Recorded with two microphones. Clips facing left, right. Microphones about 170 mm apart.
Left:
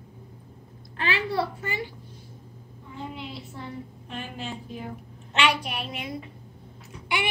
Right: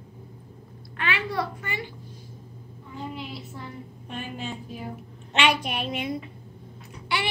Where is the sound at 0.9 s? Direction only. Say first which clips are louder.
Left 2 dB; 30° left (ahead or behind).